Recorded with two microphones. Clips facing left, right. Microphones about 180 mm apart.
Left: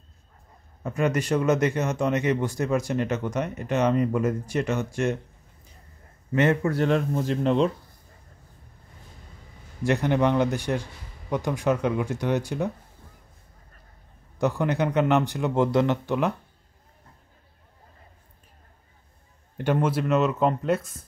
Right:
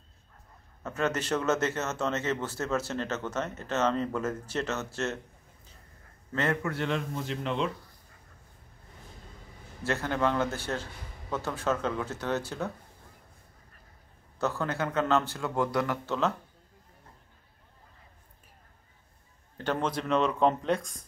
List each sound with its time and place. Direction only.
0.8 s speech: 10° left (ahead or behind)
6.3 s a man's voice: 20° left (ahead or behind)
6.6 s speech: 40° left (ahead or behind)
9.8 s speech: 15° left (ahead or behind)
14.4 s speech: 15° left (ahead or behind)
19.5 s speech: 10° left (ahead or behind)